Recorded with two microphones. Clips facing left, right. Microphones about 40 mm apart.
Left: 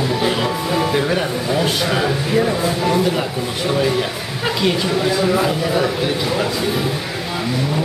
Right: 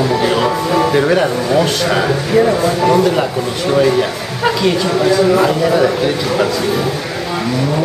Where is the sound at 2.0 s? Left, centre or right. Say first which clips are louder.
Right 5 dB; centre.